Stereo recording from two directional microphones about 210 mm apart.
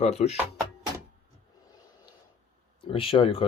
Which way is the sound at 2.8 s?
25° left (ahead or behind).